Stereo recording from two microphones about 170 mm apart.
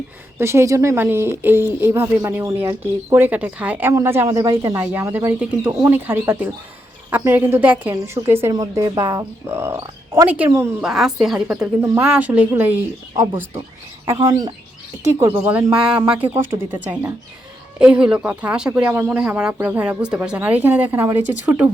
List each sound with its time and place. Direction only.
0.3 s speech: 15° right (ahead or behind)
10.8 s a woman's voice: 5° right (ahead or behind)